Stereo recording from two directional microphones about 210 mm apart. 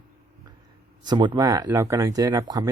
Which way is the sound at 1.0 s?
20° right (ahead or behind).